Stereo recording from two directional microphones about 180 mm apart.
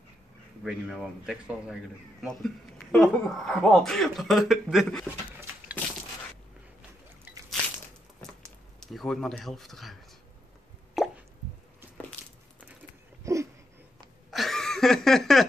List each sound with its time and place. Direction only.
0.7 s speech: 5° right (ahead or behind)
8.7 s speech: centre (ahead or behind)
11.0 s plop: centre (ahead or behind)
13.2 s a sound: 15° right (ahead or behind)
14.3 s chuckle: centre (ahead or behind)